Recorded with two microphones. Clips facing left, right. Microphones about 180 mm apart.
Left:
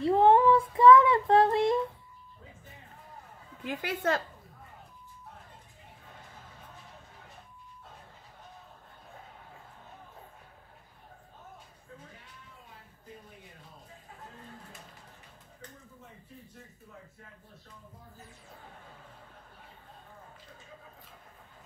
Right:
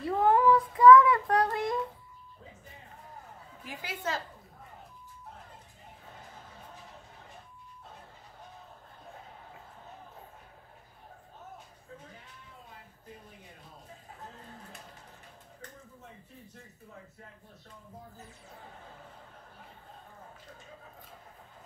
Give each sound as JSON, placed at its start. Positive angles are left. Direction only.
{"t": 0.0, "sound": "child singing", "side_deg": 25}
{"t": 3.6, "sound": "a woman's voice", "side_deg": 60}